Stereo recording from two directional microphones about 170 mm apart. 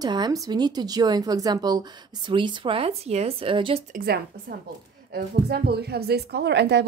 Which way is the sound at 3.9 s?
65° right (ahead or behind).